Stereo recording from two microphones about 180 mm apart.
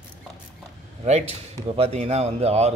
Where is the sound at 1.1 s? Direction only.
35° right (ahead or behind).